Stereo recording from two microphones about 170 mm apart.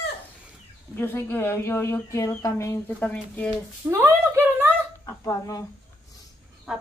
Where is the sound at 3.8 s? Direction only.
15° right (ahead or behind).